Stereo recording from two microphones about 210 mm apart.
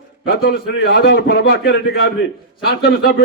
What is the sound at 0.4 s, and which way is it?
A man's voice, 50° left (ahead or behind).